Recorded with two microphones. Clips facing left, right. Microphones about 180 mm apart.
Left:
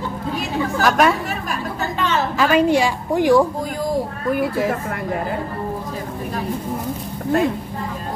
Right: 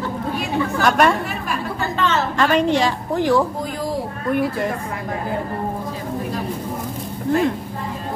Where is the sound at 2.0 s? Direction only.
15° left (ahead or behind).